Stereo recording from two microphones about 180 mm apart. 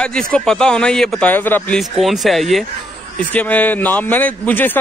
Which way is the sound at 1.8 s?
Centre (ahead or behind).